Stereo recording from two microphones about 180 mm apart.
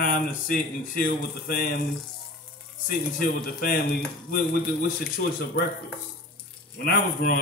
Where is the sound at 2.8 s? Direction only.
55° left (ahead or behind).